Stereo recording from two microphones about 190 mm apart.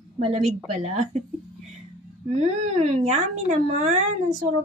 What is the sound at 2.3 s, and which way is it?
Speech, 40° right (ahead or behind).